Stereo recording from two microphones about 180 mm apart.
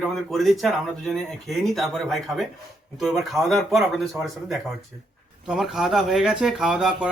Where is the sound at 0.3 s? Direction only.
Centre (ahead or behind).